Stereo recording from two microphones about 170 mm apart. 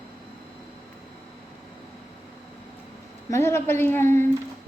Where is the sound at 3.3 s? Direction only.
15° left (ahead or behind).